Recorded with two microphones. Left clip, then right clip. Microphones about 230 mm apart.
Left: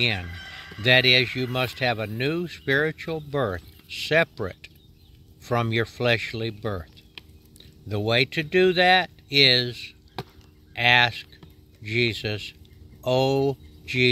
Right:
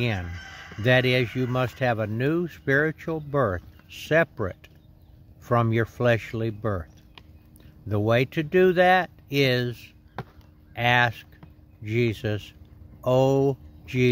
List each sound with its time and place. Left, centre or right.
0.0 s speech: right
0.3 s music: right
0.8 s speech: right